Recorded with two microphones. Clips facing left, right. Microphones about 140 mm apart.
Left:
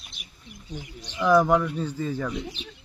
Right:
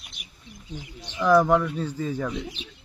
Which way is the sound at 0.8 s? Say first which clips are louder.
Left 1 dB; 25° right (ahead or behind).